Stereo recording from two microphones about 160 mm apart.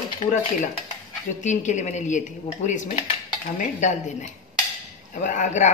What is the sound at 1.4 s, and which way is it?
A woman's voice, 50° left (ahead or behind).